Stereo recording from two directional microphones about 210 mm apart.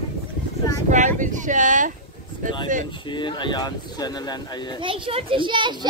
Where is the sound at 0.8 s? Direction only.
35° right (ahead or behind).